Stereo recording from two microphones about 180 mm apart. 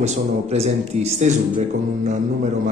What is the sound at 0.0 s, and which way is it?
Speech, 35° right (ahead or behind).